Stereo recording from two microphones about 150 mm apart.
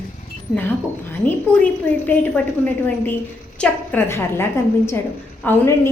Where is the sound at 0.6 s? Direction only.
15° left (ahead or behind).